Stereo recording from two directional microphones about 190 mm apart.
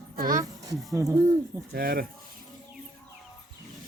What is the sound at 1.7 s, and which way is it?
Speech, 50° right (ahead or behind).